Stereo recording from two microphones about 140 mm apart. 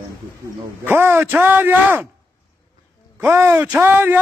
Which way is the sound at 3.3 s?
15° right (ahead or behind).